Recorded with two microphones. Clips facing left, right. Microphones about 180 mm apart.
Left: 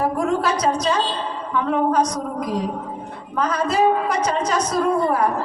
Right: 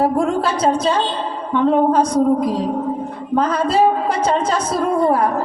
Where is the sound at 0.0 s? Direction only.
30° right (ahead or behind).